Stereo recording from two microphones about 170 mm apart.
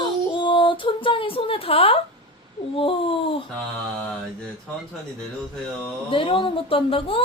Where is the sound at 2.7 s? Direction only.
35° left (ahead or behind).